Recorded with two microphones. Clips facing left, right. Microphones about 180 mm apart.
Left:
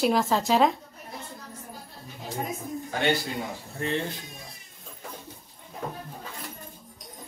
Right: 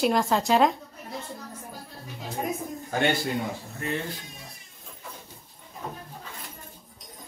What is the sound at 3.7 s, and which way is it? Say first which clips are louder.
Speech: left 4 dB; 25° left (ahead or behind).